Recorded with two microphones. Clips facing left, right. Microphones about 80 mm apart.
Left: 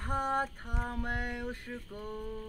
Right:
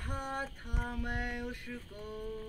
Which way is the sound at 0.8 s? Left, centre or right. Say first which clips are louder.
Left 2 dB; left.